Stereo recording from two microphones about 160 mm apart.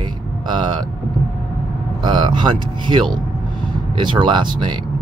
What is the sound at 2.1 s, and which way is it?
Speech, 30° right (ahead or behind).